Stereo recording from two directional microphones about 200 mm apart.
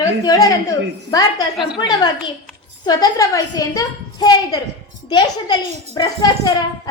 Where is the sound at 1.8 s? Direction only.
20° left (ahead or behind).